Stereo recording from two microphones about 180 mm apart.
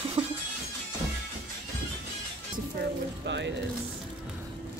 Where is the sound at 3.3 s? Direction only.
75° right (ahead or behind).